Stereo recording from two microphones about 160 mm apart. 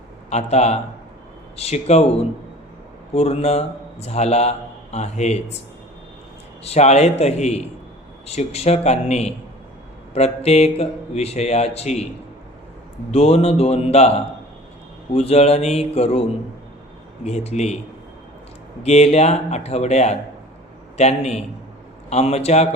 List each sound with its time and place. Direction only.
0.3 s speech: 45° left (ahead or behind)
3.2 s speech: 40° left (ahead or behind)
6.7 s speech: 45° left (ahead or behind)
13.1 s speech: 40° left (ahead or behind)
17.2 s speech: 45° left (ahead or behind)
18.8 s speech: 40° left (ahead or behind)